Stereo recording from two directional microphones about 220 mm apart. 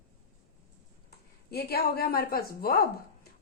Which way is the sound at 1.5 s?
45° left (ahead or behind).